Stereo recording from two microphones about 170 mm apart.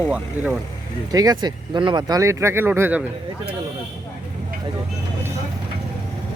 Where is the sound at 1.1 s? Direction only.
20° right (ahead or behind).